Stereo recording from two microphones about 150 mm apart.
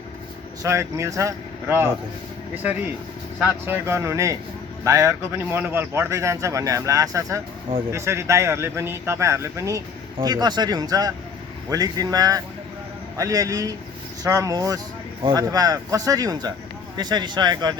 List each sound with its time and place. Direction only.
0.6 s speech: 20° right (ahead or behind)